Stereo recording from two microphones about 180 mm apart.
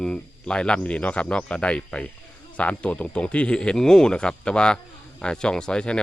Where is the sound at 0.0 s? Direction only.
5° left (ahead or behind).